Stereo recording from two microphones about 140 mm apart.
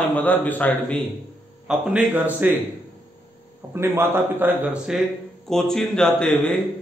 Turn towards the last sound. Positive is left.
turn(degrees=5)  # may be behind; listen again after turning